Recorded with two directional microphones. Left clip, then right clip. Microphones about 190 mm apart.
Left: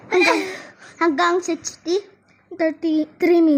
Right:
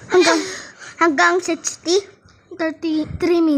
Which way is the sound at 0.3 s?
10° left (ahead or behind).